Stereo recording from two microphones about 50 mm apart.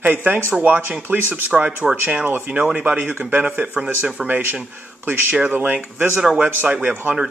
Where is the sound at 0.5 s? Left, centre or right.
Right.